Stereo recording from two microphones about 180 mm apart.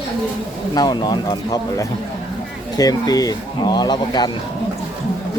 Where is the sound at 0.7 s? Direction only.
25° left (ahead or behind).